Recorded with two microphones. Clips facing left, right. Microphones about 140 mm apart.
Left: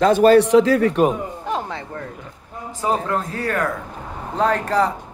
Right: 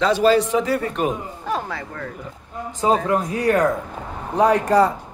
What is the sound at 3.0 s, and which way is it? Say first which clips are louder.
Speech: right 4 dB; 15° right (ahead or behind).